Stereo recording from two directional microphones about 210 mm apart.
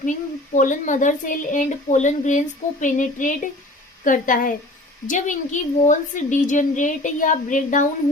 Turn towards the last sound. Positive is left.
turn(degrees=40)  # may be behind; listen again after turning